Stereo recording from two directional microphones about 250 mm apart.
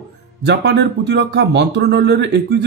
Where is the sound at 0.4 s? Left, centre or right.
Right.